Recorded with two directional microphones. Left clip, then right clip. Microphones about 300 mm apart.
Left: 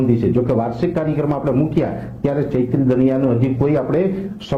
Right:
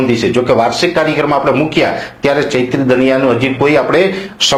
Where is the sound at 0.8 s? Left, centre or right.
Centre.